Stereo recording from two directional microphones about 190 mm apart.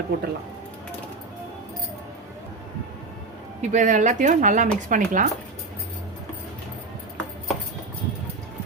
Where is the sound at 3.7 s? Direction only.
40° right (ahead or behind).